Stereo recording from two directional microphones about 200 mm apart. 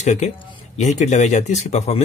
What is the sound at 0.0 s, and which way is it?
Speech, 35° left (ahead or behind).